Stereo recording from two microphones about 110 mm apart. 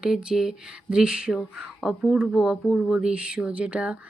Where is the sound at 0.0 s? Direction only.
5° right (ahead or behind).